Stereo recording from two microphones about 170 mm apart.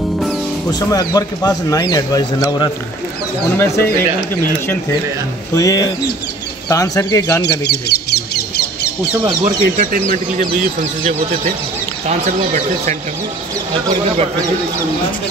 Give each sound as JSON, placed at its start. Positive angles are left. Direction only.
{"t": 0.7, "sound": "speech", "side_deg": 20}
{"t": 5.5, "sound": "speech", "side_deg": 20}
{"t": 7.4, "sound": "speech", "side_deg": 75}
{"t": 9.4, "sound": "speech", "side_deg": -50}
{"t": 12.1, "sound": "speech", "side_deg": -45}